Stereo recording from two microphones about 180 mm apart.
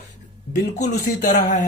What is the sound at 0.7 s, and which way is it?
Speech, 45° left (ahead or behind).